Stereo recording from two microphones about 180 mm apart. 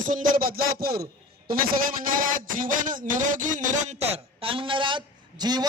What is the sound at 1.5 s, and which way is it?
Speech, 50° right (ahead or behind).